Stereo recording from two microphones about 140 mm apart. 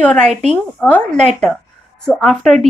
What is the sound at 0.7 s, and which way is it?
A woman's voice, 5° left (ahead or behind).